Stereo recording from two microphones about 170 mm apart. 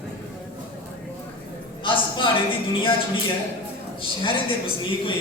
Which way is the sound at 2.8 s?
30° left (ahead or behind).